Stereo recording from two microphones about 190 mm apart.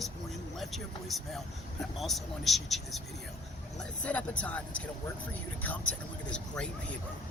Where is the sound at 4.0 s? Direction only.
5° left (ahead or behind).